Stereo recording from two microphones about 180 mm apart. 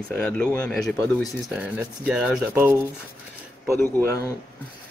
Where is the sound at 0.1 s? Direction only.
5° left (ahead or behind).